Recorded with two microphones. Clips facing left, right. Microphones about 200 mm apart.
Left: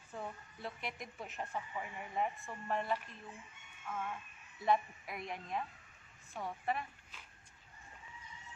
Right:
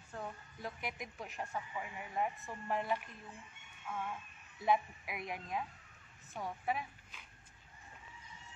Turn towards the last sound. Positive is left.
turn(degrees=-5)  # may be behind; listen again after turning